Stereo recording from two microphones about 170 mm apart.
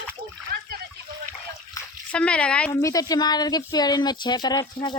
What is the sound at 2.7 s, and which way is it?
Speech, 20° left (ahead or behind).